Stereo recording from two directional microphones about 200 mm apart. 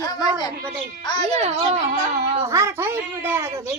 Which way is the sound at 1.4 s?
30° right (ahead or behind).